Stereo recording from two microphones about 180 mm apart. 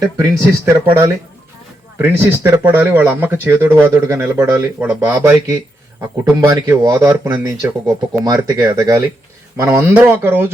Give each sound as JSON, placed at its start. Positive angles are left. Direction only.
{"t": 0.0, "sound": "speech", "side_deg": -15}
{"t": 6.3, "sound": "speech", "side_deg": -20}